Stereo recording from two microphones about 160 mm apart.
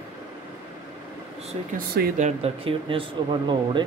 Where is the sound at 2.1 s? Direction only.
45° right (ahead or behind).